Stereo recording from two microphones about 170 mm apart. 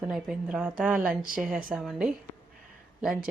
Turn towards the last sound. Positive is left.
turn(degrees=-5)  # may be behind; listen again after turning